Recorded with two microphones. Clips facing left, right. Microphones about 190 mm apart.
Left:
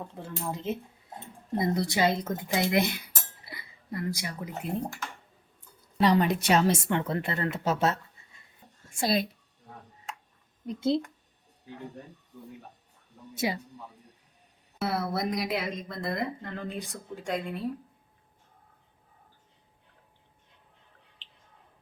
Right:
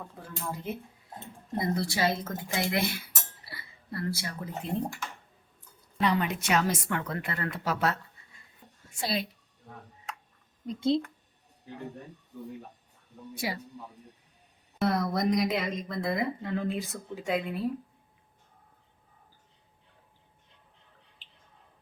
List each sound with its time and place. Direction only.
0.2 s speech: 25° left (ahead or behind)
6.0 s speech: 35° left (ahead or behind)
8.9 s speech: 45° left (ahead or behind)
10.8 s a woman's voice: 5° left (ahead or behind)
13.3 s speech: 20° left (ahead or behind)
14.8 s a woman's voice: 5° left (ahead or behind)